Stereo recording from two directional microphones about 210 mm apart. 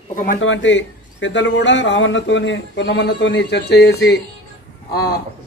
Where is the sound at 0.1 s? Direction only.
40° left (ahead or behind).